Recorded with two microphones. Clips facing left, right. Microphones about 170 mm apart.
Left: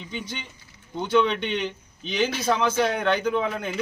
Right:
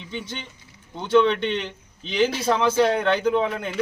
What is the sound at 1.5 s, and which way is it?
Speech, centre (ahead or behind).